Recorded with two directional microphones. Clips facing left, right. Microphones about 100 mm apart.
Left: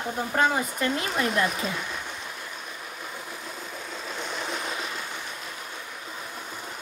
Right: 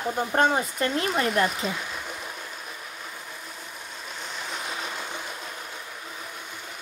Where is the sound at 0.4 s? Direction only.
35° right (ahead or behind).